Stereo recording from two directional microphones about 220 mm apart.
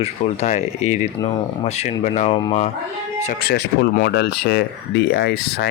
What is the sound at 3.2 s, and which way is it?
Speech, 45° left (ahead or behind).